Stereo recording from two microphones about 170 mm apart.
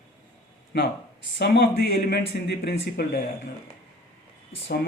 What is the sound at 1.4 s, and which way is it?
Speech, 70° left (ahead or behind).